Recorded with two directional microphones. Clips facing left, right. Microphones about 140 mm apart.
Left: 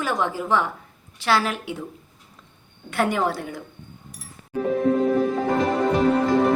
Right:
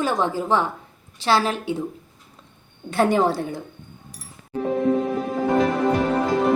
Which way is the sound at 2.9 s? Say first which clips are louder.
Right 4 dB; 30° right (ahead or behind).